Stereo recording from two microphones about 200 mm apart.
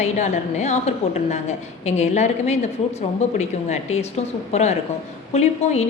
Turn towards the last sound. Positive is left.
turn(degrees=35)  # may be behind; listen again after turning